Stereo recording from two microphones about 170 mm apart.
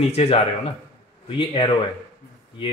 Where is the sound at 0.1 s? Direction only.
40° left (ahead or behind).